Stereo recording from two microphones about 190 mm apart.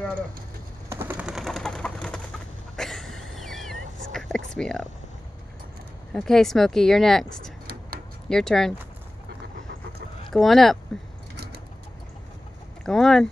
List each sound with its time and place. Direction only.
0.8 s bird: 10° right (ahead or behind); by 2.2 s 5° left (ahead or behind)
2.7 s a sound: centre (ahead or behind)
4.5 s speech: 5° left (ahead or behind)
6.1 s speech: centre (ahead or behind)
8.3 s speech: 5° left (ahead or behind)
10.3 s speech: centre (ahead or behind)
12.8 s speech: centre (ahead or behind)